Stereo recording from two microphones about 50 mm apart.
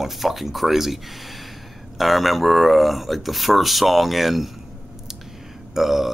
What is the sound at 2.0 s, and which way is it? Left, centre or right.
Speech, centre.